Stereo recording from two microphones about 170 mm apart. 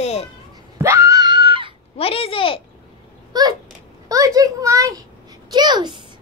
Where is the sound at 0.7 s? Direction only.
15° right (ahead or behind).